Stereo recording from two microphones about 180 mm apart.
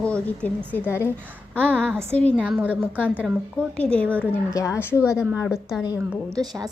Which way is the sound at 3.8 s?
5° left (ahead or behind).